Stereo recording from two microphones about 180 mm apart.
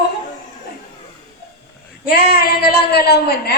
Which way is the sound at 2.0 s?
55° left (ahead or behind).